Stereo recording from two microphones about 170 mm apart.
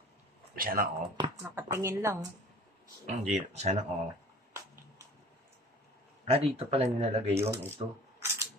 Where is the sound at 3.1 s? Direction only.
45° right (ahead or behind).